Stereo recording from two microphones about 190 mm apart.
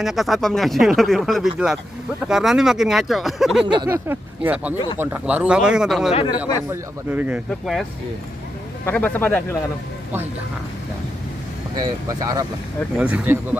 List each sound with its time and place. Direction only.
0.0 s speech: centre (ahead or behind)
3.7 s speech: 15° right (ahead or behind); by 6.1 s centre (ahead or behind)
6.1 s speech: 25° left (ahead or behind)
6.7 s speech: 10° right (ahead or behind)
8.8 s a man's voice: 10° left (ahead or behind)
11.8 s speech: 20° right (ahead or behind)
12.9 s speech: 5° right (ahead or behind)